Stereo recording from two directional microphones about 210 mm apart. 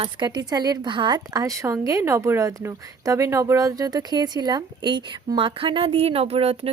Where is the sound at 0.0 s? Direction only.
20° right (ahead or behind).